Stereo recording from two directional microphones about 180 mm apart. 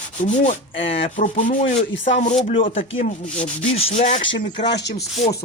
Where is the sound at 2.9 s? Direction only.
40° left (ahead or behind).